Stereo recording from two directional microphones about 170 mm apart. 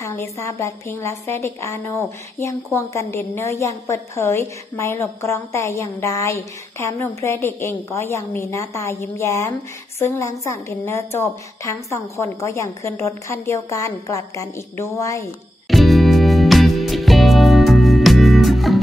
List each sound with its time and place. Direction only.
0.0 s a woman's voice: 15° left (ahead or behind)
15.7 s music: centre (ahead or behind)